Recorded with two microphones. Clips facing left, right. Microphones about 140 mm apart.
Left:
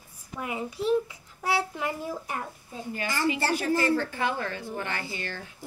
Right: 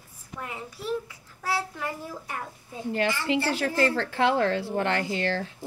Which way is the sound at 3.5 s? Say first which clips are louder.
Even; 80° right.